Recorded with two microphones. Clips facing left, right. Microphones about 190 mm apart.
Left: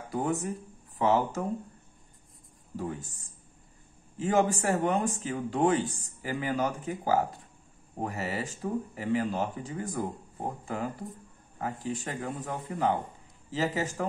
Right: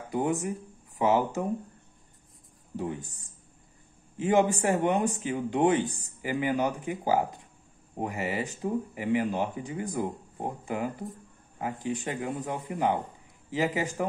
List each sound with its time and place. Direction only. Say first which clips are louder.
0.1 s speech: right 2 dB; 15° right (ahead or behind)
2.7 s speech: right 2 dB; 20° right (ahead or behind)
4.2 s speech: right 2 dB; 20° right (ahead or behind)